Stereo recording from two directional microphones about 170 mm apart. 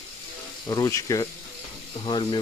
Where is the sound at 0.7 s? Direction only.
20° left (ahead or behind).